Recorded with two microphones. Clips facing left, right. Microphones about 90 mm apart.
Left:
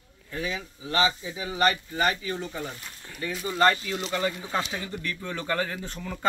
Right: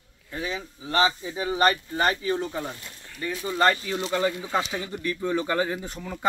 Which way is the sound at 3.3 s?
5° right (ahead or behind).